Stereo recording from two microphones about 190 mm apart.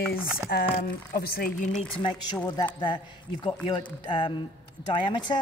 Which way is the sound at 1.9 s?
25° left (ahead or behind).